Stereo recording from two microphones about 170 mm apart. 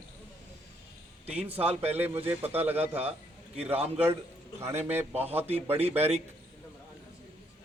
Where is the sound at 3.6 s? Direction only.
35° right (ahead or behind).